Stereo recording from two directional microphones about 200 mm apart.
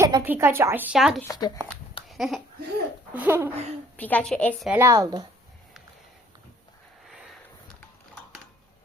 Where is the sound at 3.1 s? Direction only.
10° right (ahead or behind).